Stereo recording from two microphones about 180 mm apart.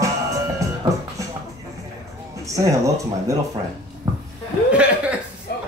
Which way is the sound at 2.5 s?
20° right (ahead or behind).